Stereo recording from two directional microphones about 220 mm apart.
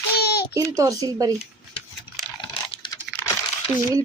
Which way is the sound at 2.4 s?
20° left (ahead or behind).